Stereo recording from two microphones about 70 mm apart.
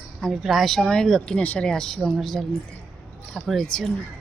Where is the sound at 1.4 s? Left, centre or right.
Left.